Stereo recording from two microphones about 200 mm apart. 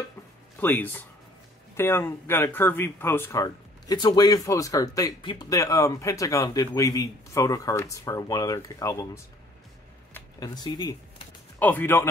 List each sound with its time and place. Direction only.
0.6 s speech: 10° left (ahead or behind)